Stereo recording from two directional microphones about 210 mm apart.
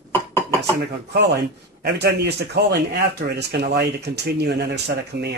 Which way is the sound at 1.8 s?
50° right (ahead or behind).